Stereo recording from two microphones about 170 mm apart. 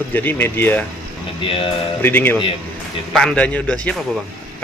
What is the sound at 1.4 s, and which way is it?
Speech, 30° left (ahead or behind).